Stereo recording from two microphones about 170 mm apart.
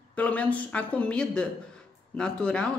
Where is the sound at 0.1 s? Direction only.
10° left (ahead or behind).